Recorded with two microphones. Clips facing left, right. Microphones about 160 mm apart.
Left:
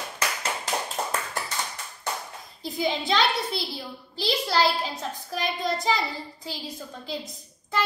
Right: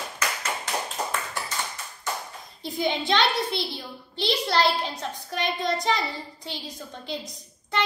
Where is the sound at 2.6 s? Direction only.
Centre (ahead or behind).